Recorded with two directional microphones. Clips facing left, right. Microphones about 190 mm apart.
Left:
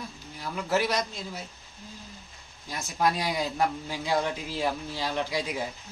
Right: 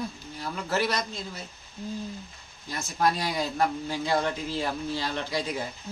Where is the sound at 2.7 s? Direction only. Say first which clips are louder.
Right 1 dB; 10° left (ahead or behind).